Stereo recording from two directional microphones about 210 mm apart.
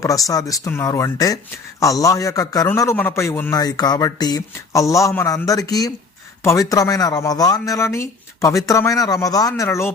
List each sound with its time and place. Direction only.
0.0 s a man's voice: 15° left (ahead or behind)